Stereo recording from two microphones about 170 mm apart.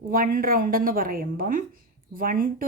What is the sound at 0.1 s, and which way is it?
A woman's voice, 55° right (ahead or behind).